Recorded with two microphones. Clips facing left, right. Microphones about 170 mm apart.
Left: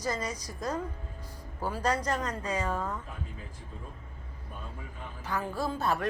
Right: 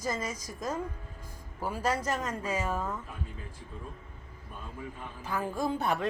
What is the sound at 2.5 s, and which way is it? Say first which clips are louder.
Speech: left 1 dB; 10° right (ahead or behind).